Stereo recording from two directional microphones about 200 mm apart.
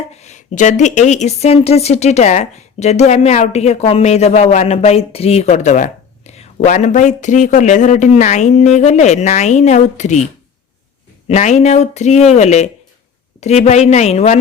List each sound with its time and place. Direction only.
0.1 s a woman's voice: 35° left (ahead or behind)
11.3 s a woman's voice: 35° left (ahead or behind)